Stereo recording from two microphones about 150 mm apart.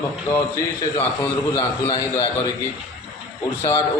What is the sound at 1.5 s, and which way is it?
A man's voice, 30° left (ahead or behind).